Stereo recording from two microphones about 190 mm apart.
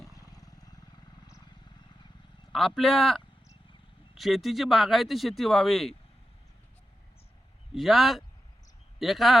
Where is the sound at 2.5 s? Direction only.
Centre (ahead or behind).